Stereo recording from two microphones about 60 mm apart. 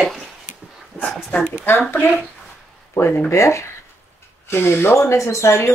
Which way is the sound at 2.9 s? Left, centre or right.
Left.